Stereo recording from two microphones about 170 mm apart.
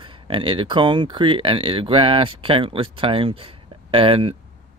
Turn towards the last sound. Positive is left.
turn(degrees=-35)  # may be behind; listen again after turning